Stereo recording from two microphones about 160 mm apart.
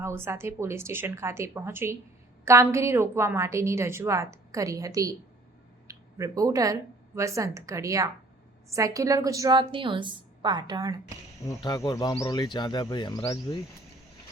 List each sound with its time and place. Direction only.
0.0 s a woman's voice: 15° right (ahead or behind)
11.4 s speech: 25° left (ahead or behind)